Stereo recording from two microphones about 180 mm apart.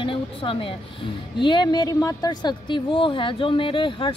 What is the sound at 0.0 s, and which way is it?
A woman's voice, 30° left (ahead or behind).